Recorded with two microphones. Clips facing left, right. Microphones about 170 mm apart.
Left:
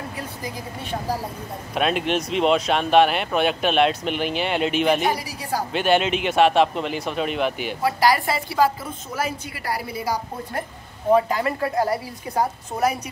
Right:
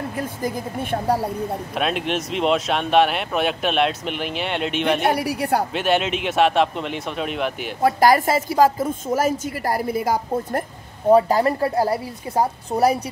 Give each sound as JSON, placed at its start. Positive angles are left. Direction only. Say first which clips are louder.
{"t": 0.2, "sound": "a woman's voice", "louder": "right 6 dB", "side_deg": -50}
{"t": 1.8, "sound": "speech", "louder": "left 2 dB", "side_deg": 0}
{"t": 5.1, "sound": "a woman's voice", "louder": "right 6 dB", "side_deg": -60}
{"t": 5.7, "sound": "speech", "louder": "left 1 dB", "side_deg": 0}
{"t": 7.8, "sound": "a woman's voice", "louder": "right 4 dB", "side_deg": -45}
{"t": 11.1, "sound": "a woman's voice", "louder": "right 4 dB", "side_deg": -35}